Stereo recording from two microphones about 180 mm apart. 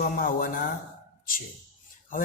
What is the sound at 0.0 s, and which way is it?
Speech, 50° left (ahead or behind).